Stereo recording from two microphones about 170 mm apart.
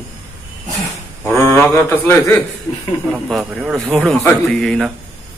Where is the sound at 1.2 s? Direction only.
15° left (ahead or behind).